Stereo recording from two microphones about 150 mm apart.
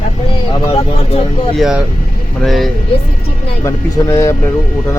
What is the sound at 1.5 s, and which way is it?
Speech, 5° right (ahead or behind).